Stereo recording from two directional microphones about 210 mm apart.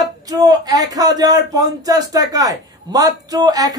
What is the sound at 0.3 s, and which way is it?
Speech, 20° right (ahead or behind).